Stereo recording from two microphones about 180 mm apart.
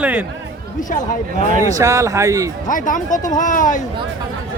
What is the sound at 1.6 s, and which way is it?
Speech, 20° right (ahead or behind).